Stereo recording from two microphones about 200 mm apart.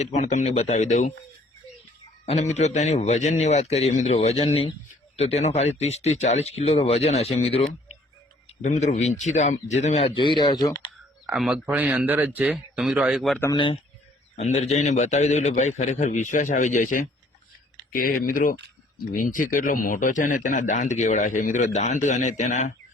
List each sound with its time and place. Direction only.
0.0 s a man's voice: 35° left (ahead or behind)
2.2 s a man's voice: 35° left (ahead or behind)
8.6 s a man's voice: 35° left (ahead or behind); by 10.8 s 20° left (ahead or behind)
11.3 s speech: 5° right (ahead or behind)
13.5 s a man's voice: 25° left (ahead or behind)